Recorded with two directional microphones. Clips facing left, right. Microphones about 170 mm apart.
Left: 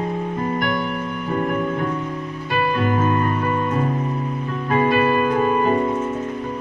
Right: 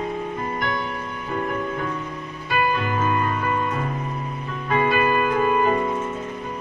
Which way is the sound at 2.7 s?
40° left (ahead or behind).